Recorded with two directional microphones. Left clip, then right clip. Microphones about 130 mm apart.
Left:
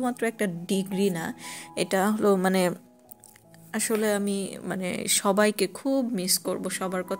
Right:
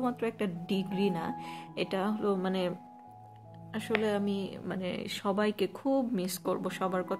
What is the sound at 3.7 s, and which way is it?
Speech, 45° left (ahead or behind).